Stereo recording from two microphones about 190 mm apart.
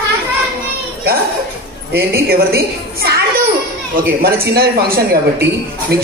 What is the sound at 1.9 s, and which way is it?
Speech, 55° right (ahead or behind).